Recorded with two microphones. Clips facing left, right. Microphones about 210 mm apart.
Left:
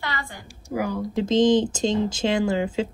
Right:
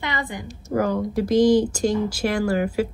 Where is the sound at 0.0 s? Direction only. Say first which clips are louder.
Right 4 dB; 20° right (ahead or behind).